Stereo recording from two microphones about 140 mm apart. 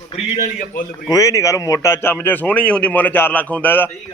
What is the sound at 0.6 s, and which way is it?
Speech, 85° left.